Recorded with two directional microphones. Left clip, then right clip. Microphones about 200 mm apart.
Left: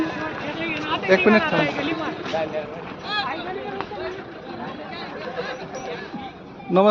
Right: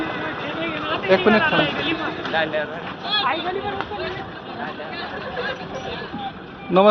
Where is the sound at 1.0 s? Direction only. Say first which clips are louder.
Even; 15° left (ahead or behind).